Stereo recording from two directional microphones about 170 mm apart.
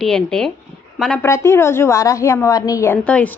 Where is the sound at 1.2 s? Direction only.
15° left (ahead or behind).